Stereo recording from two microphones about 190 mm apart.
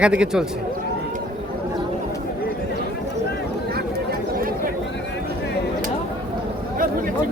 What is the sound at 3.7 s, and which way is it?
Chatter, 55° right (ahead or behind).